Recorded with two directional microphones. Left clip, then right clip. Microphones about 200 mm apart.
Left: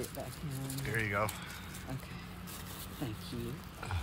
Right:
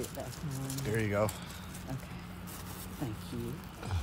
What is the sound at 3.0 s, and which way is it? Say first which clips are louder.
Speech: right 1 dB; centre (ahead or behind).